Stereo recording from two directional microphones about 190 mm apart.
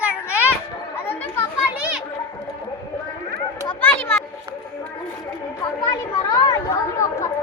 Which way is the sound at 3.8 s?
10° left (ahead or behind).